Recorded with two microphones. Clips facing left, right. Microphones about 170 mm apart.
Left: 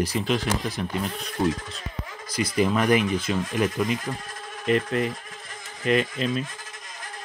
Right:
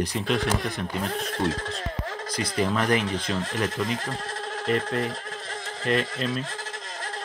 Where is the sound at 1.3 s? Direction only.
75° right (ahead or behind).